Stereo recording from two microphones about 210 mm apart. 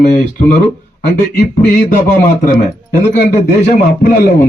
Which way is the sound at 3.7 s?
45° left (ahead or behind).